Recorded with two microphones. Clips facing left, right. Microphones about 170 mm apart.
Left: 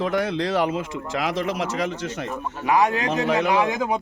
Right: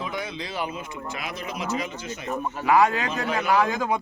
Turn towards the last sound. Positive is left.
turn(degrees=20)  # may be behind; listen again after turning